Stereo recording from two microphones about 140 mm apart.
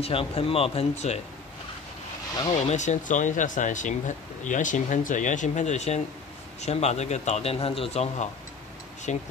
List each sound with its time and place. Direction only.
0.0 s a man's voice: 45° left (ahead or behind)
2.7 s a man's voice: 60° left (ahead or behind)